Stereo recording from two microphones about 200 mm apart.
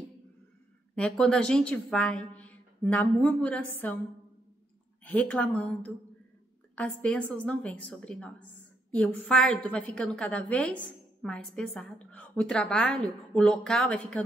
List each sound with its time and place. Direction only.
0.9 s a woman's voice: 5° left (ahead or behind)
5.0 s a woman's voice: 10° left (ahead or behind)